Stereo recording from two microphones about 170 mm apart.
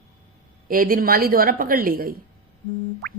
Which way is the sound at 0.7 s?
55° right (ahead or behind).